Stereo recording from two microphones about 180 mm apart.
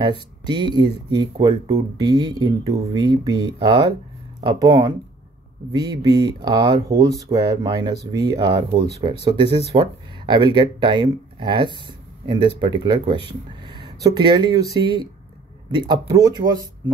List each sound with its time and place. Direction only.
0.5 s speech: 25° right (ahead or behind)